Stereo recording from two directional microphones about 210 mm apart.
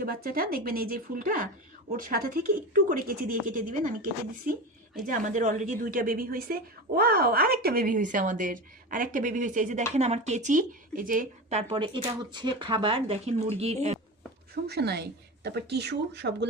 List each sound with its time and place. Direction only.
0.0 s a woman's voice: 45° right (ahead or behind)
14.5 s speech: 50° right (ahead or behind)